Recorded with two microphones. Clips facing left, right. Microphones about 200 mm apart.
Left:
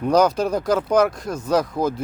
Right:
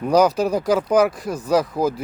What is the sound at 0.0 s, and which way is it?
Speech, 10° right (ahead or behind).